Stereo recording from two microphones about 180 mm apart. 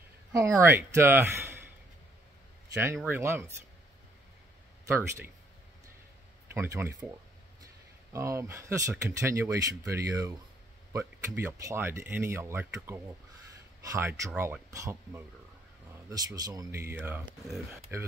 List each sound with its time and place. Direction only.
0.3 s speech: 15° right (ahead or behind)
2.8 s speech: 10° right (ahead or behind)
4.8 s speech: 15° right (ahead or behind)
6.5 s speech: 15° right (ahead or behind)